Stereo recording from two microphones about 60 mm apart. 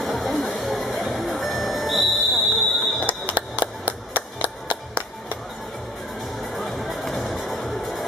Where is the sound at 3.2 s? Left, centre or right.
Right.